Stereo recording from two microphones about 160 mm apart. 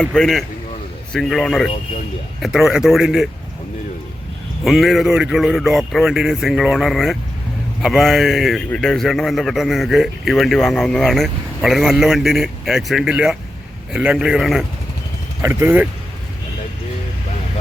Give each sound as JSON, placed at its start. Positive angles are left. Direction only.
{"t": 0.0, "sound": "a man's voice", "side_deg": 5}
{"t": 4.6, "sound": "a man's voice", "side_deg": 0}
{"t": 15.4, "sound": "speech", "side_deg": -15}